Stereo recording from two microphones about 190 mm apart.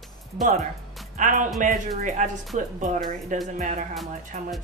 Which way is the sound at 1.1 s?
40° right (ahead or behind).